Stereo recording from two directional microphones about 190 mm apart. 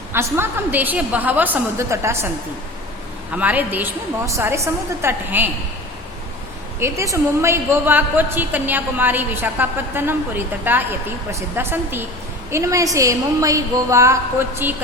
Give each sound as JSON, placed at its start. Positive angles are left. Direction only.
{"t": 0.1, "sound": "a woman's voice", "side_deg": -10}
{"t": 3.3, "sound": "a woman's voice", "side_deg": -10}
{"t": 6.7, "sound": "a woman's voice", "side_deg": -15}